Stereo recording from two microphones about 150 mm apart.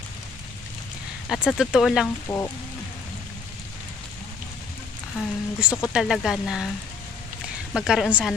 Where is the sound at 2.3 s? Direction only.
15° left (ahead or behind).